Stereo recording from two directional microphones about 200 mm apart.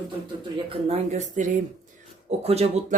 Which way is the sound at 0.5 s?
30° right (ahead or behind).